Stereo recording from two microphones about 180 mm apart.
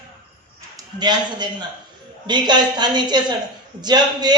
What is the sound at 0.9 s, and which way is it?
A woman's voice, 25° right (ahead or behind).